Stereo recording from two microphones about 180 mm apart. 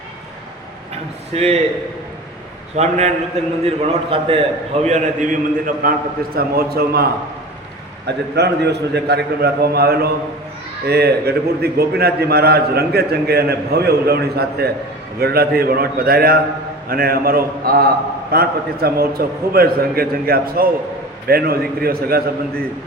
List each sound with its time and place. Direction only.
1.3 s a man's voice: 35° right (ahead or behind)
2.7 s a man's voice: 40° right (ahead or behind)
4.9 s a man's voice: 40° right (ahead or behind)
6.3 s a man's voice: 60° right (ahead or behind)